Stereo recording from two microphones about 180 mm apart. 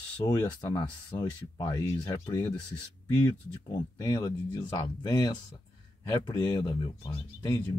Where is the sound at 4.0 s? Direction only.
20° left (ahead or behind).